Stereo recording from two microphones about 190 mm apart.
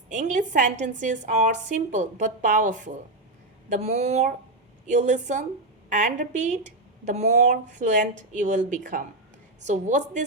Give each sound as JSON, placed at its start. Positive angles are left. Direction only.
{"t": 0.1, "sound": "speech", "side_deg": -40}